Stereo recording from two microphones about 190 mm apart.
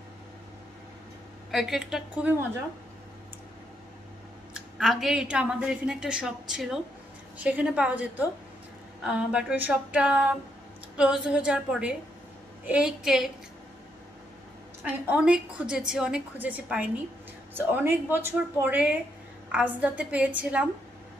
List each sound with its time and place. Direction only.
1.5 s a woman's voice: centre (ahead or behind)
4.6 s a woman's voice: centre (ahead or behind)
14.8 s a woman's voice: 5° right (ahead or behind)